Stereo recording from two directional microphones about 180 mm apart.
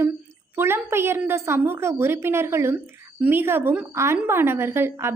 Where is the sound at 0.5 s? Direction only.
15° right (ahead or behind).